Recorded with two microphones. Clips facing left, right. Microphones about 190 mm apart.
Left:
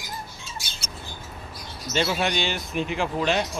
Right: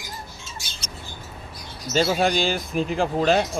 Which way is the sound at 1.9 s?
40° right (ahead or behind).